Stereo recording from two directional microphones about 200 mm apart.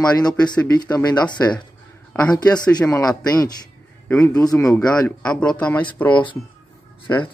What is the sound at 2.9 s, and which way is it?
Speech, 15° left (ahead or behind).